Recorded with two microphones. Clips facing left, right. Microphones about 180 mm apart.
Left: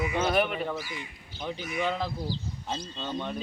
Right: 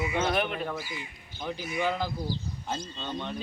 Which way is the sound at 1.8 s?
Centre (ahead or behind).